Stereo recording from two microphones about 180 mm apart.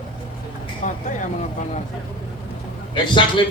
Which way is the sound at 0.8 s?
45° left (ahead or behind).